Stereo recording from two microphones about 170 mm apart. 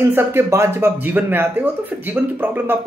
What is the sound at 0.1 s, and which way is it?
Speech, 15° right (ahead or behind).